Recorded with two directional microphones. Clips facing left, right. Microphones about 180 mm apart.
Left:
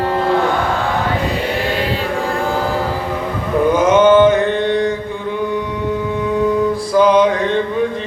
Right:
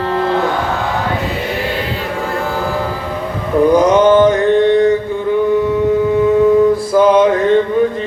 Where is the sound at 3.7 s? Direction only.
35° right (ahead or behind).